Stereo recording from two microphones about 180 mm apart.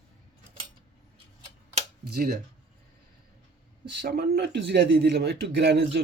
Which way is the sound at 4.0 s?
65° right (ahead or behind).